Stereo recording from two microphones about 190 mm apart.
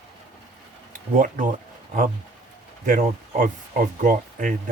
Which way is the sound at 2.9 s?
45° right (ahead or behind).